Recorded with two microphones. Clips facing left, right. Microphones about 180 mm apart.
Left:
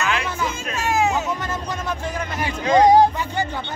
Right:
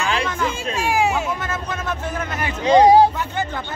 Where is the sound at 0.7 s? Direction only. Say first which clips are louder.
Even; 10° right (ahead or behind).